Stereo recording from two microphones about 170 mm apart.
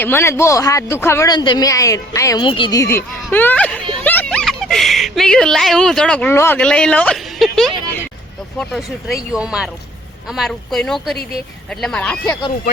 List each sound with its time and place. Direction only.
0.0 s a woman's voice: 15° left (ahead or behind)